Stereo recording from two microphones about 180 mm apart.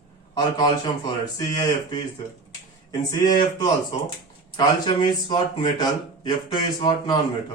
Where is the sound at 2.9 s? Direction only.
20° left (ahead or behind).